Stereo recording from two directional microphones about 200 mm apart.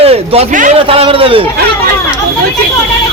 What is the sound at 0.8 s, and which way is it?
Speech, 30° right (ahead or behind).